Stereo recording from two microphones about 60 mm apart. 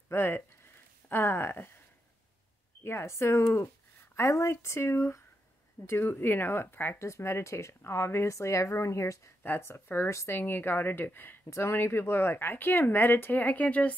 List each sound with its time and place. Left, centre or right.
0.1 s speech: left
2.8 s speech: left
5.9 s speech: left
7.0 s speech: left
9.4 s speech: left